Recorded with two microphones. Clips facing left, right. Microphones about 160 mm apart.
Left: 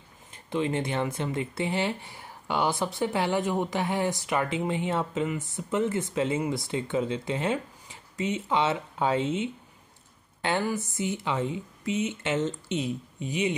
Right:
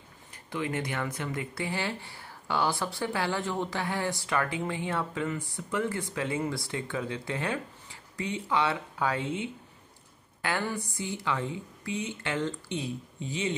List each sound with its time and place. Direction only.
0.3 s speech: 25° left (ahead or behind)